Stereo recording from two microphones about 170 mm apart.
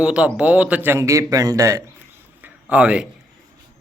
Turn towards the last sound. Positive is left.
turn(degrees=-5)  # may be behind; listen again after turning